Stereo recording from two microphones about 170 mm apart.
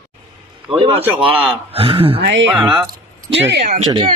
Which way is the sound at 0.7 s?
35° right (ahead or behind).